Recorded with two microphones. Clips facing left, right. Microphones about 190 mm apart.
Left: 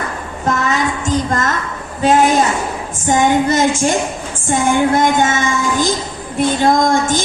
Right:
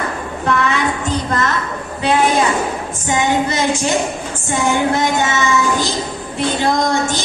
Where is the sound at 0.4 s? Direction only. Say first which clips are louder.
Even; 40° left (ahead or behind).